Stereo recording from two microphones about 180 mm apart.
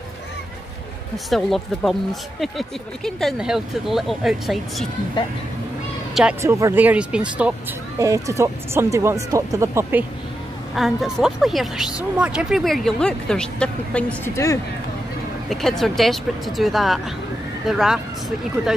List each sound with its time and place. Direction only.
1.1 s speech: centre (ahead or behind)
6.4 s speech: 15° right (ahead or behind)
8.0 s speech: 15° right (ahead or behind)
10.7 s speech: centre (ahead or behind); by 14.6 s 15° left (ahead or behind)
15.5 s speech: centre (ahead or behind)